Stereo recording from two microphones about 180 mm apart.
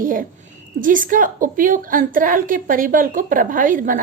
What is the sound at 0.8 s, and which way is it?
A woman's voice, 50° right (ahead or behind).